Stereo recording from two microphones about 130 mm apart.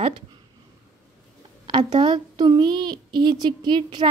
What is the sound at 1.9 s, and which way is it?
A woman's voice, 35° right (ahead or behind).